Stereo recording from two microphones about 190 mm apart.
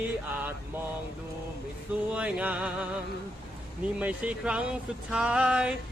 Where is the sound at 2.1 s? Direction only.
5° right (ahead or behind).